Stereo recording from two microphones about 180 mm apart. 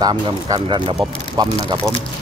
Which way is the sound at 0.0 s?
25° right (ahead or behind).